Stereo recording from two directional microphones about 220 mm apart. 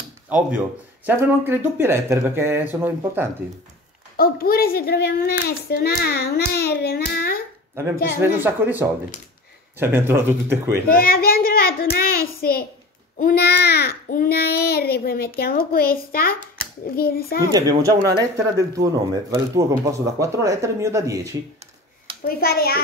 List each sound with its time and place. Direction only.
1.0 s speech: 10° right (ahead or behind)
4.2 s a child's voice: 40° left (ahead or behind)
7.7 s speech: 10° right (ahead or behind)
10.9 s a child's voice: 40° left (ahead or behind)
17.4 s speech: 15° right (ahead or behind)
22.2 s a child's voice: 45° left (ahead or behind)